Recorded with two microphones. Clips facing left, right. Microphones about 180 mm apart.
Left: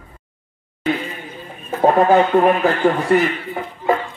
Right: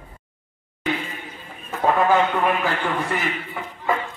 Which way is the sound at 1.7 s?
40° left (ahead or behind).